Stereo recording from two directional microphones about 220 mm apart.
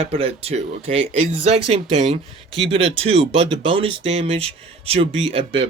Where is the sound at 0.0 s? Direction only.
25° right (ahead or behind).